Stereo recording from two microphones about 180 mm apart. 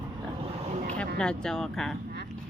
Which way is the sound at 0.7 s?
40° right (ahead or behind).